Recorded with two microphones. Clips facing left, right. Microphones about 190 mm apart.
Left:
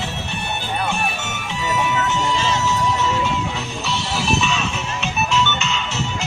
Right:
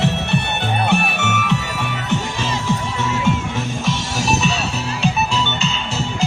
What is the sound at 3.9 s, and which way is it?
Music, 40° right (ahead or behind).